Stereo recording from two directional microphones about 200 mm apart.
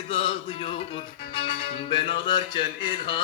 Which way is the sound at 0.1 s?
25° left (ahead or behind).